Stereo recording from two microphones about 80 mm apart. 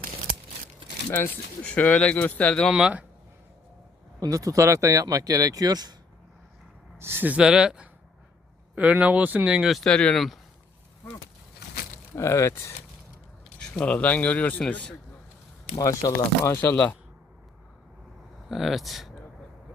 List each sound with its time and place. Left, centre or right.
1.6 s speech: centre
2.7 s speech: centre
4.2 s speech: right
7.0 s speech: right
7.3 s speech: centre
9.6 s speech: centre
9.9 s speech: centre
10.2 s speech: centre
12.1 s speech: left
13.6 s speech: centre
15.8 s speech: left
16.5 s speech: left
16.7 s speech: centre
18.4 s speech: centre